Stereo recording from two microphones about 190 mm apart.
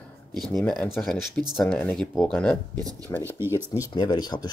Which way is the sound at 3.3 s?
10° right (ahead or behind).